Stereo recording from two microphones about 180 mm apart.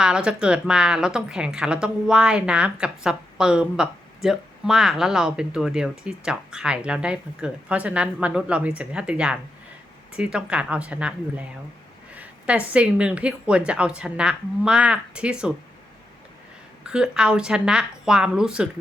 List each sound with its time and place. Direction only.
0.0 s a woman's voice: 5° right (ahead or behind)
16.8 s a woman's voice: 5° right (ahead or behind)